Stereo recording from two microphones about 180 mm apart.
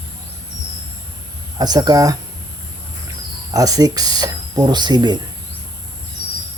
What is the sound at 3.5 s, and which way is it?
Speech, 20° right (ahead or behind).